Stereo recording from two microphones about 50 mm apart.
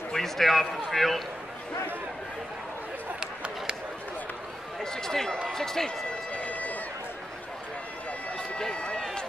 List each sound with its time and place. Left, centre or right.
0.1 s a man's voice: centre
3.2 s a sound: centre
4.9 s speech: centre
6.0 s run: left
8.4 s run: centre